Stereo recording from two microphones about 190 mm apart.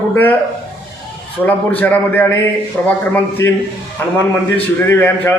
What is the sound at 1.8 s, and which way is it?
A man's voice, 10° left (ahead or behind).